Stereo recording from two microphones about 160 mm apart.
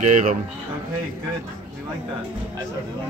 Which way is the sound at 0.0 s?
50° right (ahead or behind).